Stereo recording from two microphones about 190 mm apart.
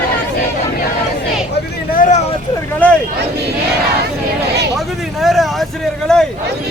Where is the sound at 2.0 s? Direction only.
40° left (ahead or behind).